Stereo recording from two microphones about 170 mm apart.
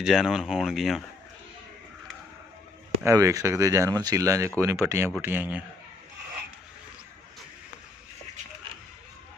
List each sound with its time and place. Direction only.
0.0 s speech: 5° right (ahead or behind)
3.0 s speech: 15° right (ahead or behind)